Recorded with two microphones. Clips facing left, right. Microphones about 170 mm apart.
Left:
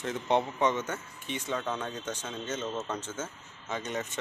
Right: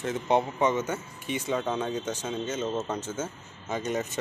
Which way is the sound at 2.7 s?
25° right (ahead or behind).